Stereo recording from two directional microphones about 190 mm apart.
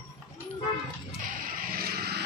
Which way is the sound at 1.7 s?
55° right (ahead or behind).